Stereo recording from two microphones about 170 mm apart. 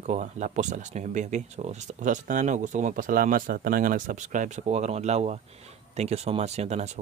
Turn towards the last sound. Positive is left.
turn(degrees=-40)  # may be behind; listen again after turning